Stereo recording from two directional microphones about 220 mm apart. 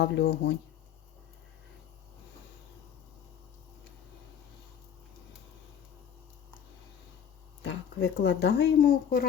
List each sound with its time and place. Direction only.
0.0 s speech: 50° left (ahead or behind)
7.6 s speech: 55° left (ahead or behind)